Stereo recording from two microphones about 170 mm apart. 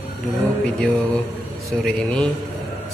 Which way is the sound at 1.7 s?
5° left (ahead or behind).